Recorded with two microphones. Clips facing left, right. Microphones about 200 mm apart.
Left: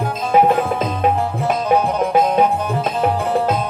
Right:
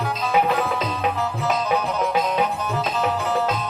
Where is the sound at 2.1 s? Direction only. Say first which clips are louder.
Left 8 dB; 50° left (ahead or behind).